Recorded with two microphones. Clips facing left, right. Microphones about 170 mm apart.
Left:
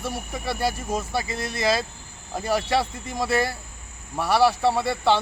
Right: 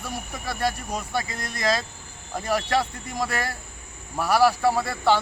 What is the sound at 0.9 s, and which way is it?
Speech, 5° left (ahead or behind).